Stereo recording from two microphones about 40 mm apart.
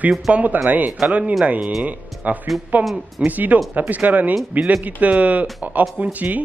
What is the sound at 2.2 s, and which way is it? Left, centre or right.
Speech, right.